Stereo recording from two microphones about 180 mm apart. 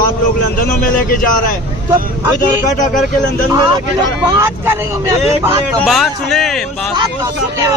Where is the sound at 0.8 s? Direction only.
55° left (ahead or behind).